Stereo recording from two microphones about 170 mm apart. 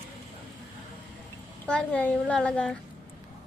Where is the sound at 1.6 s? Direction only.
5° left (ahead or behind).